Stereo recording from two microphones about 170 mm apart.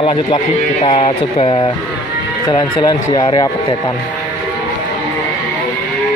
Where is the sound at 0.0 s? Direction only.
30° left (ahead or behind).